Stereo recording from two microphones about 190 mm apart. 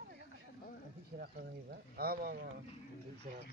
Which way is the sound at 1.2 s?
55° right (ahead or behind).